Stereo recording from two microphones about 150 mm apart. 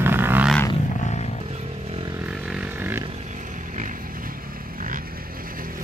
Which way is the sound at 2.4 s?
10° right (ahead or behind).